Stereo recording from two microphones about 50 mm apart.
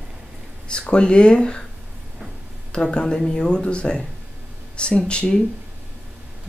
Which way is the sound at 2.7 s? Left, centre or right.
Centre.